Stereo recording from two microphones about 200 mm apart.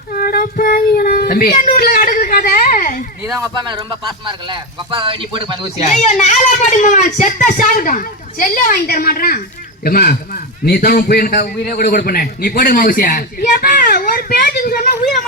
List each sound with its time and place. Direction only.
0.3 s child singing: 45° left (ahead or behind)
3.3 s speech: 20° right (ahead or behind)
5.8 s a woman's voice: 35° left (ahead or behind)